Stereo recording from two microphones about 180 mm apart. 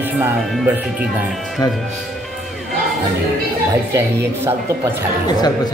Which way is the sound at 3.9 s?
10° right (ahead or behind).